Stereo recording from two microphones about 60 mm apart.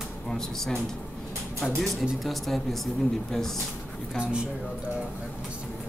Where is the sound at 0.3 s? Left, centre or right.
Centre.